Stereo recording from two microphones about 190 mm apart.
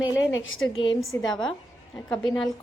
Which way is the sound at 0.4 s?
90° left.